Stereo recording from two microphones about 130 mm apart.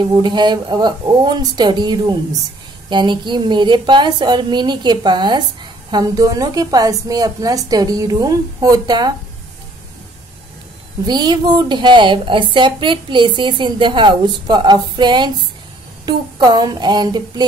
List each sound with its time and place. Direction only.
0.0 s a woman's voice: 35° right (ahead or behind)
11.1 s a woman's voice: 35° right (ahead or behind)